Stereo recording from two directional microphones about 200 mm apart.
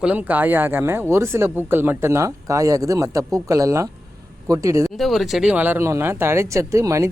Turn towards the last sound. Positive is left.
turn(degrees=-15)  # may be behind; listen again after turning